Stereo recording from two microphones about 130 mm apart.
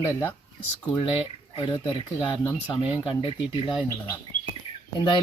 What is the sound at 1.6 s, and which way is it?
Speech, 35° left (ahead or behind).